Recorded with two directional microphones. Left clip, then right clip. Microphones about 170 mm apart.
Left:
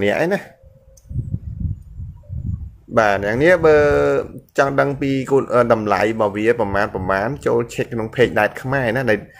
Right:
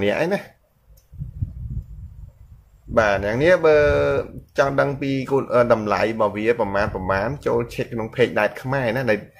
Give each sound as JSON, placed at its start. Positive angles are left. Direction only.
{"t": 0.0, "sound": "speech", "side_deg": 20}
{"t": 2.9, "sound": "speech", "side_deg": 30}